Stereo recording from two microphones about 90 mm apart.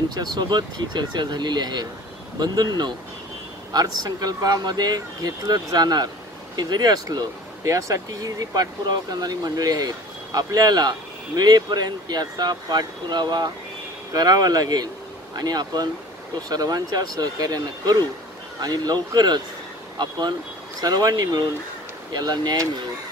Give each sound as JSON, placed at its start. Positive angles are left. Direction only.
{"t": 0.4, "sound": "speech", "side_deg": -55}